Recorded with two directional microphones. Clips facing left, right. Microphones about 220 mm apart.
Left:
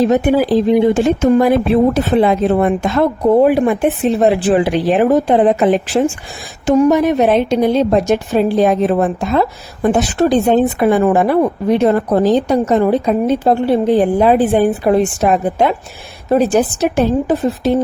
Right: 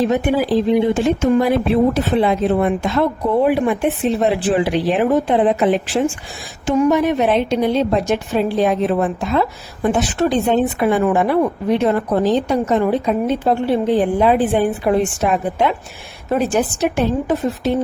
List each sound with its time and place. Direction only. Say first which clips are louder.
0.9 s a woman's voice: left 3 dB; 45° left (ahead or behind)